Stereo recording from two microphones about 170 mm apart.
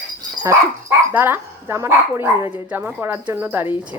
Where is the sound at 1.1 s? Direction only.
15° right (ahead or behind).